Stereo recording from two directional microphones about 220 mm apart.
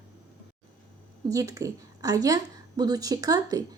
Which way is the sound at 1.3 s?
15° right (ahead or behind).